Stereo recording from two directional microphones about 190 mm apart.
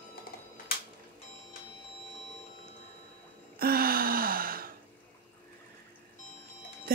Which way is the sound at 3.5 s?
50° right (ahead or behind).